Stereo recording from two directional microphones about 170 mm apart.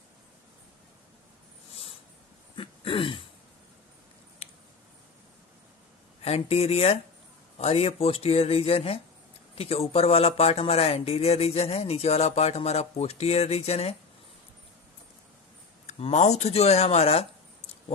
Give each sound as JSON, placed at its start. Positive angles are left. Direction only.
{"t": 2.5, "sound": "throat clearing", "side_deg": 30}
{"t": 6.2, "sound": "speech", "side_deg": 40}
{"t": 15.9, "sound": "speech", "side_deg": 40}